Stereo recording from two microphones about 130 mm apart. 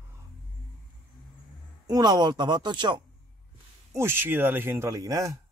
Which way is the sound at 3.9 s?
20° right (ahead or behind).